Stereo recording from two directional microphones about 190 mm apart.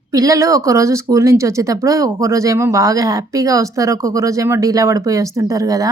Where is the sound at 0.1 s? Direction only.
20° right (ahead or behind).